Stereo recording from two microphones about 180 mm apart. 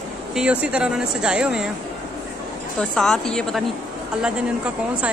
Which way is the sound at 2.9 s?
Centre (ahead or behind).